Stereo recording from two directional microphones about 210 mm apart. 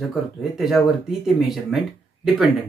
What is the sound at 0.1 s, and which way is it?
Speech, centre (ahead or behind).